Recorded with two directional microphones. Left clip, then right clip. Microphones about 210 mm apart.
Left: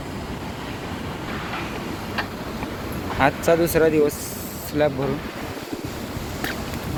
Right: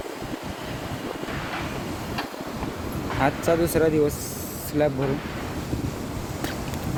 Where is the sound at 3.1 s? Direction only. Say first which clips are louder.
Left 4 dB; 5° right (ahead or behind).